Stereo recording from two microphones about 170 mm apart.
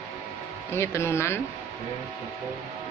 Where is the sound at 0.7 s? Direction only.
15° left (ahead or behind).